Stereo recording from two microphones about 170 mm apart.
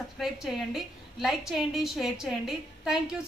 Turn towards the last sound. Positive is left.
turn(degrees=0)  # may be behind; listen again after turning